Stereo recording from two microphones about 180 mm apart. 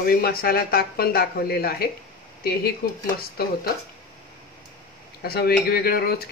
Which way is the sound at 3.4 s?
55° left (ahead or behind).